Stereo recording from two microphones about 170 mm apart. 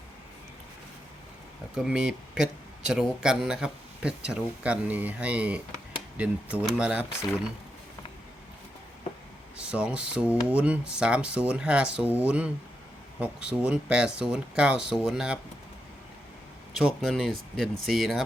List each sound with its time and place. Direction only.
1.7 s speech: 5° right (ahead or behind)
9.6 s speech: 5° right (ahead or behind)
16.7 s speech: centre (ahead or behind)